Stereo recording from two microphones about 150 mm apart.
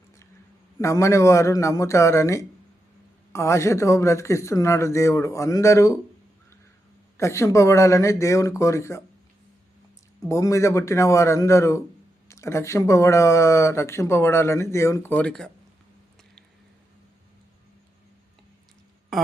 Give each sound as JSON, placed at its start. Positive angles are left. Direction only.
{"t": 0.8, "sound": "speech", "side_deg": 20}
{"t": 7.2, "sound": "speech", "side_deg": 20}
{"t": 10.2, "sound": "speech", "side_deg": 20}
{"t": 19.1, "sound": "speech", "side_deg": 0}